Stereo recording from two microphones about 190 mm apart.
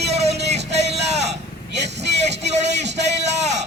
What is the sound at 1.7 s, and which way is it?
Vehicle, 65° right (ahead or behind).